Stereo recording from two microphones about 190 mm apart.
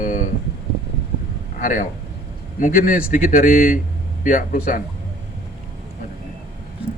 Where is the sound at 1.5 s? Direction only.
45° left (ahead or behind).